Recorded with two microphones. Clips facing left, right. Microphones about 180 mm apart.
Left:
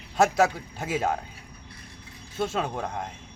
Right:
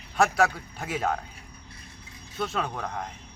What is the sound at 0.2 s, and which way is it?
Speech, 25° left (ahead or behind).